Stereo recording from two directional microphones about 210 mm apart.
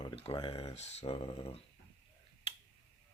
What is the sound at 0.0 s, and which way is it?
Speech, 25° left (ahead or behind).